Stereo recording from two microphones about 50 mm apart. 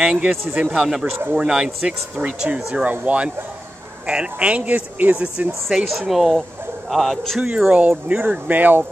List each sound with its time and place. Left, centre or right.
0.0 s speech: centre
4.1 s speech: right
5.7 s speech: centre
7.3 s speech: centre
8.1 s speech: right